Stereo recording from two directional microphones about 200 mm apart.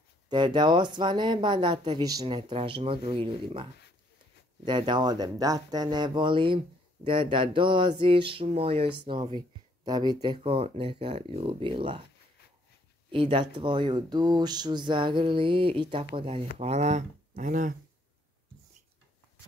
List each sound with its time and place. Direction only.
0.3 s a woman's voice: 20° right (ahead or behind)
4.6 s a woman's voice: 25° right (ahead or behind)
13.1 s a woman's voice: 25° right (ahead or behind)